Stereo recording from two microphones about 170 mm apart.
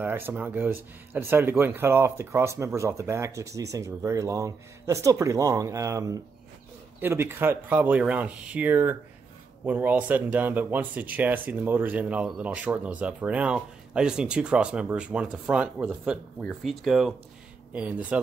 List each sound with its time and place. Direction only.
0.0 s speech: 10° right (ahead or behind)